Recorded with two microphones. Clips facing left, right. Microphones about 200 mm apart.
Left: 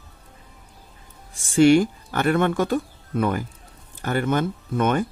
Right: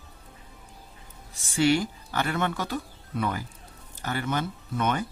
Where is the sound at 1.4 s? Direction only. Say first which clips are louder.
Left 8 dB; 50° left (ahead or behind).